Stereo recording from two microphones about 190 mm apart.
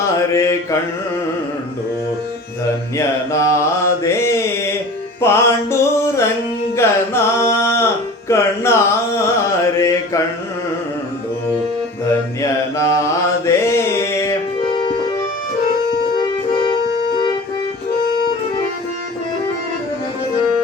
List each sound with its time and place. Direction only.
0.1 s mantra: 15° left (ahead or behind)
3.3 s mantra: 15° left (ahead or behind)
5.2 s music: 15° left (ahead or behind)
8.3 s carnatic music: 15° left (ahead or behind)
9.7 s mantra: 15° left (ahead or behind)
12.4 s mantra: 15° left (ahead or behind)
14.7 s music: 25° left (ahead or behind)
16.1 s music: 25° left (ahead or behind)